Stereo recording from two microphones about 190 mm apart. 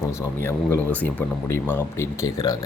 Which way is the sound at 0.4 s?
10° left (ahead or behind).